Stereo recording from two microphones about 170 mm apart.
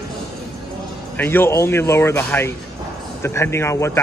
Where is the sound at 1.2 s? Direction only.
10° left (ahead or behind).